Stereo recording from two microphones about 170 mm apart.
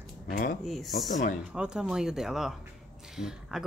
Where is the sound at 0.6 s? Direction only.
Centre (ahead or behind).